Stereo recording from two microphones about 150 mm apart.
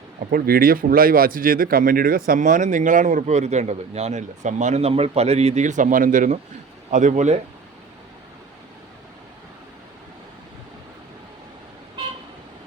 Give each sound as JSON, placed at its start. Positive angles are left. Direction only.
{"t": 0.3, "sound": "speech", "side_deg": -85}